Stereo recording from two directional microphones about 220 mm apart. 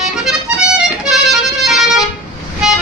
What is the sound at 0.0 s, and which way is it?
Accordion, 5° right (ahead or behind).